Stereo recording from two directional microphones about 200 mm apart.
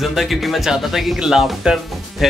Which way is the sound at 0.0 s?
Centre (ahead or behind).